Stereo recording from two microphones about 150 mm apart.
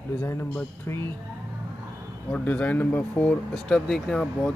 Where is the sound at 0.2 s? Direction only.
15° left (ahead or behind).